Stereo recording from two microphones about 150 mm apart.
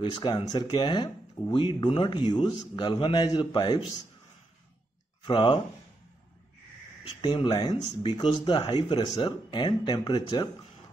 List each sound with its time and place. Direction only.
0.0 s speech: 30° left (ahead or behind)
5.2 s speech: 35° left (ahead or behind)
7.1 s speech: 30° left (ahead or behind)